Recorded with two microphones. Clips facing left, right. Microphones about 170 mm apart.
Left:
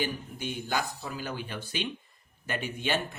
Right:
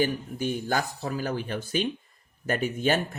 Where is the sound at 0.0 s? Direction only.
45° right (ahead or behind).